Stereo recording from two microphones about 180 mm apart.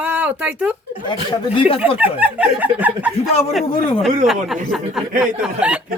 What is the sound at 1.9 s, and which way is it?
Speech, 10° right (ahead or behind).